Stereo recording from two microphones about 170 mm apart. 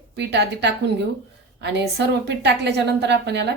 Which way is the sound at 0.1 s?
85° right.